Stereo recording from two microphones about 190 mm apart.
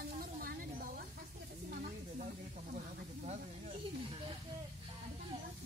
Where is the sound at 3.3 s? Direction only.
35° right (ahead or behind).